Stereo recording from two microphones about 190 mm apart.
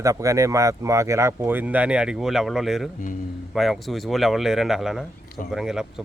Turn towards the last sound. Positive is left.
turn(degrees=-5)  # may be behind; listen again after turning